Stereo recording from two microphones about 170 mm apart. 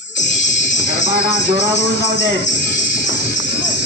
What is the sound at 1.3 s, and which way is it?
Speech, 90° left.